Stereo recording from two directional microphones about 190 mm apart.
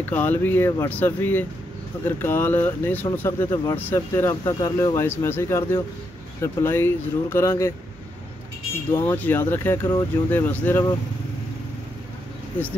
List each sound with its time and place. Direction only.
0.0 s speech: 10° left (ahead or behind)
8.9 s speech: 10° left (ahead or behind)